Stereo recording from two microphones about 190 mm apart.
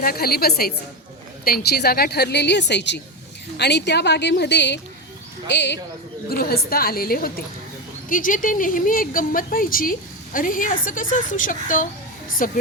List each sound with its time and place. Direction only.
0.0 s a woman's voice: 50° left (ahead or behind)
6.2 s a woman's voice: 55° left (ahead or behind)